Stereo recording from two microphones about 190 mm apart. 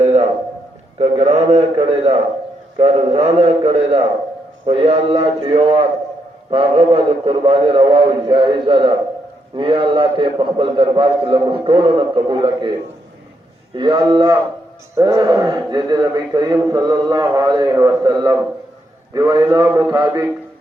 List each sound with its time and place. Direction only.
0.0 s a sound: 35° right (ahead or behind)
0.9 s a man's voice: 30° right (ahead or behind)
13.7 s a man's voice: 25° right (ahead or behind)